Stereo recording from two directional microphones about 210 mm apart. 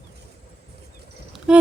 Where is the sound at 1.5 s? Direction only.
5° right (ahead or behind).